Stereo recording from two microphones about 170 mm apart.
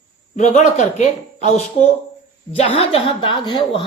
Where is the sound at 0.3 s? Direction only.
45° left (ahead or behind).